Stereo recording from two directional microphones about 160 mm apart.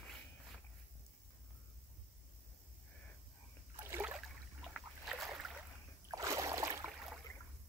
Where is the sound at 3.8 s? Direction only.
15° right (ahead or behind).